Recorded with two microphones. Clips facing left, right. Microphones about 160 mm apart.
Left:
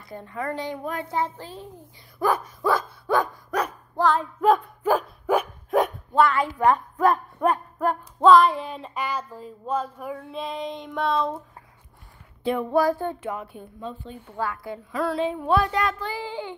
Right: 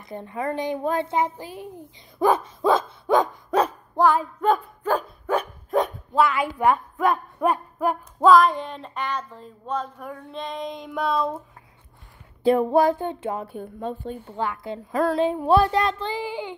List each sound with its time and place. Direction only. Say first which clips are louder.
0.0 s music: right 3 dB; 20° right (ahead or behind)
0.7 s a woman's voice: right 6 dB; 30° right (ahead or behind)
1.1 s speech: right 3 dB; 15° right (ahead or behind)
2.1 s dog: right 4 dB; 20° right (ahead or behind)
4.0 s a sound: right 3 dB; 10° right (ahead or behind)
4.4 s dog: left 2 dB; 5° left (ahead or behind)
7.4 s a sound: even; 10° right (ahead or behind)
12.4 s music: right 4 dB; 35° right (ahead or behind)
13.6 s a woman's voice: right 5 dB; 50° right (ahead or behind)
14.2 s music: left 1 dB; 25° right (ahead or behind)
14.9 s a woman's voice: right 4 dB; 45° right (ahead or behind); by 16.3 s 25° right (ahead or behind)
16.3 s speech: right 2 dB; 15° right (ahead or behind)